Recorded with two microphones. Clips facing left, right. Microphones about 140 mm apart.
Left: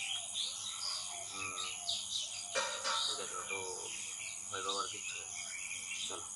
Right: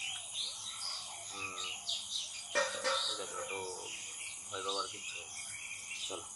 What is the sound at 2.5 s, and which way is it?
Music, 65° right (ahead or behind).